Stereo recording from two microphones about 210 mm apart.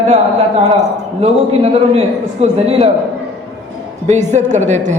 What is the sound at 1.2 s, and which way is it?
A man's voice, 30° right (ahead or behind).